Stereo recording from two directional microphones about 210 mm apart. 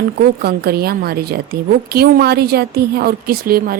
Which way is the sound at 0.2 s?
50° right (ahead or behind).